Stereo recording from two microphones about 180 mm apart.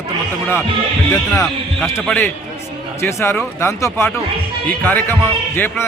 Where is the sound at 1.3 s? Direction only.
Centre (ahead or behind).